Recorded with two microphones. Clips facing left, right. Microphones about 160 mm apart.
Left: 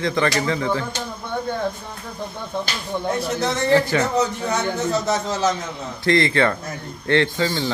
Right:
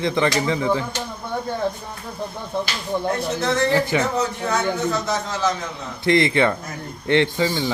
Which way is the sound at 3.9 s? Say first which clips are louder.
Even; 15° right (ahead or behind).